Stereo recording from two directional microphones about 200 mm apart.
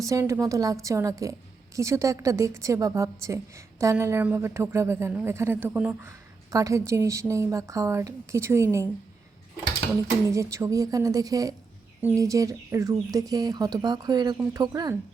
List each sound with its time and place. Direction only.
0.0 s a woman's voice: 15° right (ahead or behind)
10.2 s a woman's voice: 15° right (ahead or behind)